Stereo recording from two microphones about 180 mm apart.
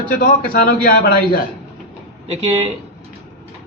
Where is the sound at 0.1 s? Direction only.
50° left (ahead or behind).